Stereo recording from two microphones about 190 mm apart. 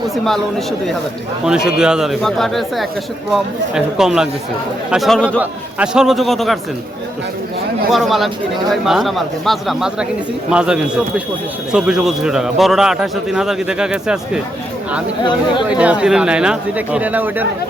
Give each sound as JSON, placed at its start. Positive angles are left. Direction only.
{"t": 1.5, "sound": "a man's voice", "side_deg": -5}
{"t": 7.9, "sound": "a man's voice", "side_deg": 0}
{"t": 15.2, "sound": "speech", "side_deg": 25}
{"t": 15.7, "sound": "speech", "side_deg": -5}